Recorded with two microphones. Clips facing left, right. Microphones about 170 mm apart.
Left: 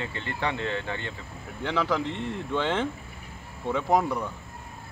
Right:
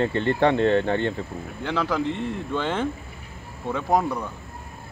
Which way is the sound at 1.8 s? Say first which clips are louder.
Right 2 dB; 5° right (ahead or behind).